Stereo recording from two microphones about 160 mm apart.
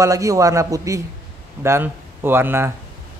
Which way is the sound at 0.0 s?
20° right (ahead or behind).